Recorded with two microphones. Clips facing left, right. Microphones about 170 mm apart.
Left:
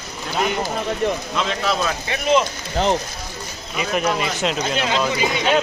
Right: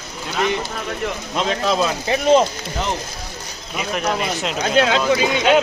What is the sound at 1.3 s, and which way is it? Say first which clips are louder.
Speech: right 3 dB; 35° right (ahead or behind).